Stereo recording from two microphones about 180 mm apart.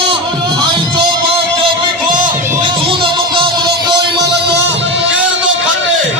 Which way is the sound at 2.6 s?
30° right (ahead or behind).